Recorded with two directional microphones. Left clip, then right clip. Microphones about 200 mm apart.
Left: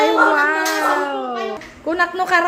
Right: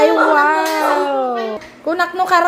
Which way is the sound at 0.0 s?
15° right (ahead or behind).